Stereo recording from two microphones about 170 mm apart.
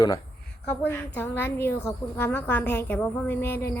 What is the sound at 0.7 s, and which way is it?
A woman's voice, 10° left (ahead or behind).